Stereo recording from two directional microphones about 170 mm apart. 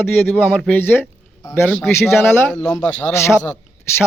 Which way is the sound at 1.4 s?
25° left (ahead or behind).